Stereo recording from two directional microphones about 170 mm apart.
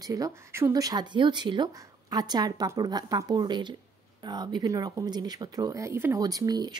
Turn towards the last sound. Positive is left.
turn(degrees=-25)  # may be behind; listen again after turning